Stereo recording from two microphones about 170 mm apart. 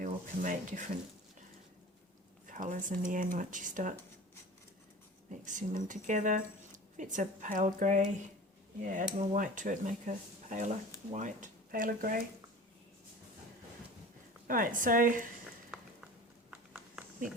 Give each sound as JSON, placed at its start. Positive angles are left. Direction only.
{"t": 0.0, "sound": "speech", "side_deg": -50}
{"t": 2.5, "sound": "speech", "side_deg": -50}
{"t": 5.3, "sound": "speech", "side_deg": -45}
{"t": 14.4, "sound": "speech", "side_deg": -55}
{"t": 16.5, "sound": "a sound", "side_deg": -10}